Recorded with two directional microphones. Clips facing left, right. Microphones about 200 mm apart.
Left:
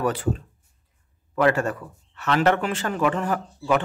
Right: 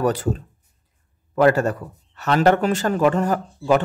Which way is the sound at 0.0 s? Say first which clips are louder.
Right 3 dB; 40° right (ahead or behind).